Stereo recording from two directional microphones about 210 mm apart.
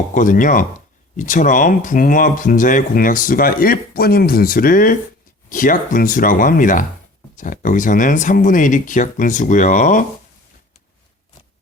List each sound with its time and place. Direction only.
0.1 s speech: 40° left (ahead or behind)